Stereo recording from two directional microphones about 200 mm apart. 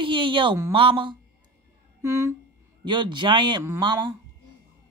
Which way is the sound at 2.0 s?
15° right (ahead or behind).